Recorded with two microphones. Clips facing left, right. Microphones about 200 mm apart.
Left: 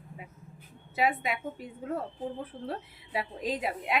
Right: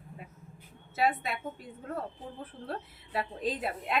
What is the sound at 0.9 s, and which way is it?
Speech, 15° left (ahead or behind).